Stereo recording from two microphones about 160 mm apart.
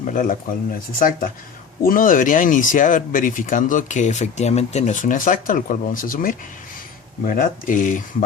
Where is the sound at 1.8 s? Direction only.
60° left (ahead or behind).